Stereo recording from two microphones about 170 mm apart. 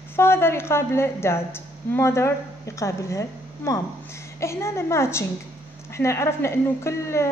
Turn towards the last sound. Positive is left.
turn(degrees=15)  # may be behind; listen again after turning